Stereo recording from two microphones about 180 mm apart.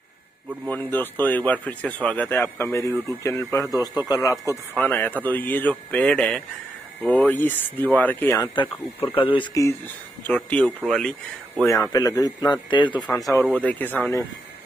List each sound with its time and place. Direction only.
0.7 s a man's voice: 10° left (ahead or behind)
8.5 s a man's voice: 30° left (ahead or behind); by 11.1 s centre (ahead or behind)
11.6 s a man's voice: 15° left (ahead or behind)
13.3 s speech: 10° left (ahead or behind)